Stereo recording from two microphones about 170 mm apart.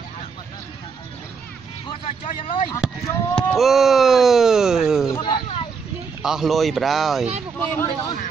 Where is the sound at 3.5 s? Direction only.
Centre (ahead or behind).